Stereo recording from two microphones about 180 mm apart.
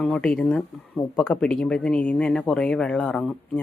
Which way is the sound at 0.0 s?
5° left (ahead or behind).